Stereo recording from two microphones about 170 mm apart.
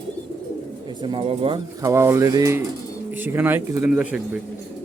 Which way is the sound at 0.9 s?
30° right (ahead or behind).